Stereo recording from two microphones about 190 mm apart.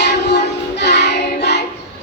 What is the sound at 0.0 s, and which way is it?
Music, 60° left (ahead or behind).